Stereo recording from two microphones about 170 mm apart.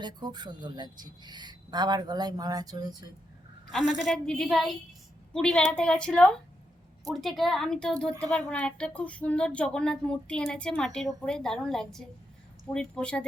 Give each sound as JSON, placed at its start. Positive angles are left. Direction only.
{"t": 0.0, "sound": "speech", "side_deg": -25}
{"t": 3.7, "sound": "a woman's voice", "side_deg": 0}